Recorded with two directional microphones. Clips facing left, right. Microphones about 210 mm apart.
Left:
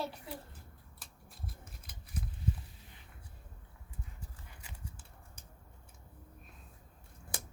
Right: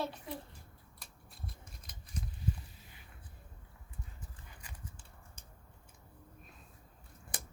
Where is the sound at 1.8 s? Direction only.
5° left (ahead or behind).